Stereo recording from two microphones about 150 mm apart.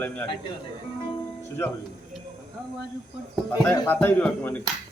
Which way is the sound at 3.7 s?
15° left (ahead or behind).